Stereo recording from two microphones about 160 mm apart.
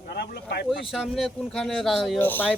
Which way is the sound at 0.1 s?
90° left.